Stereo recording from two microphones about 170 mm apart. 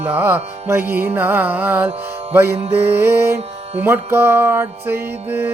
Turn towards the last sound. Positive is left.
turn(degrees=-10)  # may be behind; listen again after turning